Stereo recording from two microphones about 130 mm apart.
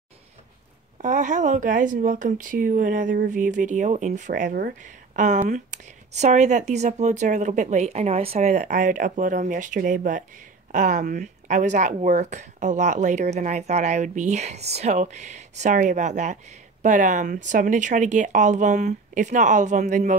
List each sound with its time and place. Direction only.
1.0 s speech: 70° right (ahead or behind)